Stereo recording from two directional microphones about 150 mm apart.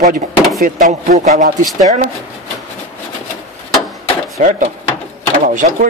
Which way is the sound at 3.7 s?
Centre (ahead or behind).